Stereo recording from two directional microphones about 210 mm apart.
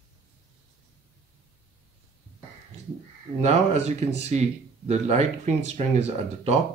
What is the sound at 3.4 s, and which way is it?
Speech, 30° right (ahead or behind).